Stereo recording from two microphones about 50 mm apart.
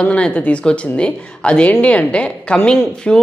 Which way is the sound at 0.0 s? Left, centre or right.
Left.